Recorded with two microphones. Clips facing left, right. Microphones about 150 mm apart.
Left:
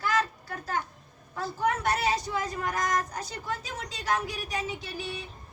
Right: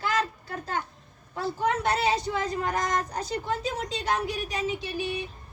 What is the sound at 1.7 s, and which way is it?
A woman's voice, 25° right (ahead or behind).